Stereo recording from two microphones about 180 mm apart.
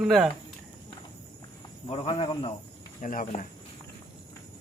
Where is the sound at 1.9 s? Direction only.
30° left (ahead or behind).